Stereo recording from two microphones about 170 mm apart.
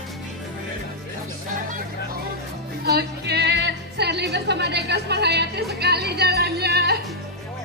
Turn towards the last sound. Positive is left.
turn(degrees=-70)  # may be behind; listen again after turning